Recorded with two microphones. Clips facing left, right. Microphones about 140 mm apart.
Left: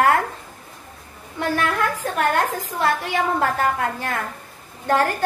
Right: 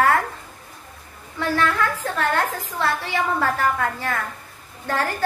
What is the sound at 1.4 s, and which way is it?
A woman's voice, 15° left (ahead or behind).